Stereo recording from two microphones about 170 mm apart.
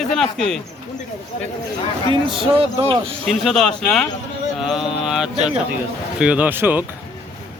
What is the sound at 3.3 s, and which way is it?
Speech, centre (ahead or behind).